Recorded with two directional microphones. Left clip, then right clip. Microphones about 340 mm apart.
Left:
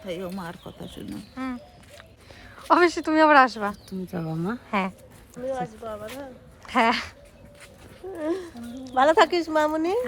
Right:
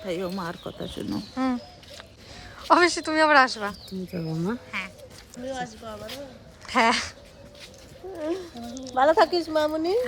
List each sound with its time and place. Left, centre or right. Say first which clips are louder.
0.1 s speech: right 3 dB; centre
2.6 s speech: even; centre
5.5 s a woman's voice: left 3 dB; left
6.7 s speech: even; centre
8.1 s a woman's voice: left 1 dB; left